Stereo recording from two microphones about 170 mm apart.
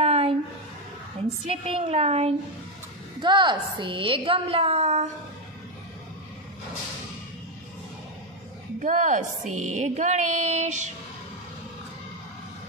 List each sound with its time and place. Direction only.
0.0 s a sound: 35° right (ahead or behind)
1.5 s a woman's voice: 35° right (ahead or behind)
3.2 s a woman's voice: 25° right (ahead or behind)
8.7 s a woman's voice: 45° right (ahead or behind)
9.5 s music: 45° right (ahead or behind)